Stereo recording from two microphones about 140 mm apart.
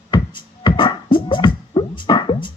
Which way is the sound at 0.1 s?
35° left (ahead or behind).